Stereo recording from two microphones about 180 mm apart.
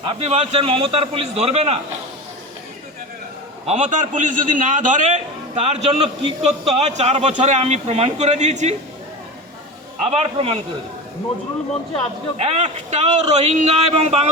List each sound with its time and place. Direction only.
0.1 s a man's voice: 35° right (ahead or behind)
3.7 s a man's voice: 40° right (ahead or behind)
10.0 s a man's voice: 35° right (ahead or behind)
12.4 s a man's voice: 35° right (ahead or behind)